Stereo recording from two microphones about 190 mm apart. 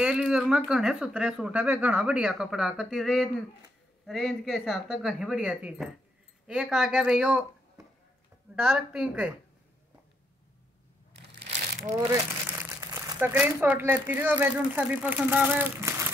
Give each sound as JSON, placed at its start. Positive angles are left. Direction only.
{"t": 0.0, "sound": "speech", "side_deg": -5}
{"t": 11.1, "sound": "crushing", "side_deg": -65}
{"t": 12.1, "sound": "speech", "side_deg": -15}